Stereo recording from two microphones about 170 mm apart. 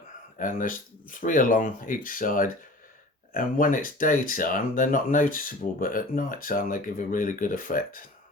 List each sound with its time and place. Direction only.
0.3 s speech: 50° left (ahead or behind)